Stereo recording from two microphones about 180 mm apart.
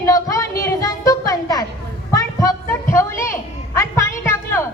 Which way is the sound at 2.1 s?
20° left (ahead or behind).